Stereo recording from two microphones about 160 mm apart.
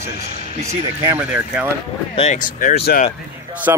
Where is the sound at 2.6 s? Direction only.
65° left (ahead or behind).